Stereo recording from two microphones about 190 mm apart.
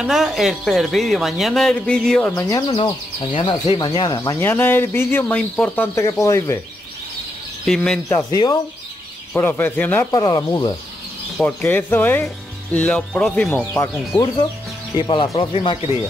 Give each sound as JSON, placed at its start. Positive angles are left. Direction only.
{"t": 0.0, "sound": "a man's voice", "side_deg": 0}
{"t": 2.3, "sound": "speech", "side_deg": 15}
{"t": 7.6, "sound": "a man's voice", "side_deg": 5}
{"t": 8.1, "sound": "speech", "side_deg": 15}
{"t": 10.1, "sound": "speech", "side_deg": 20}
{"t": 11.3, "sound": "speech", "side_deg": 10}
{"t": 15.0, "sound": "speech", "side_deg": 25}